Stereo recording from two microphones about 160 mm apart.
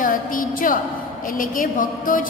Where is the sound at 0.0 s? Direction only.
60° left (ahead or behind).